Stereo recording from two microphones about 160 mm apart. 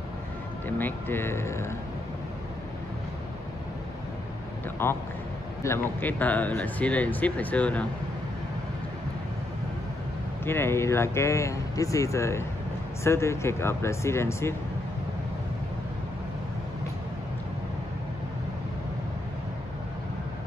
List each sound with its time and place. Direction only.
0.7 s speech: 10° left (ahead or behind)
4.8 s speech: 15° left (ahead or behind)
10.4 s speech: 15° left (ahead or behind)